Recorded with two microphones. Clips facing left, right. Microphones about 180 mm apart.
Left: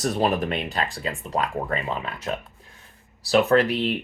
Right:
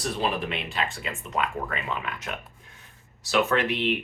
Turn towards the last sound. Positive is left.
turn(degrees=35)  # may be behind; listen again after turning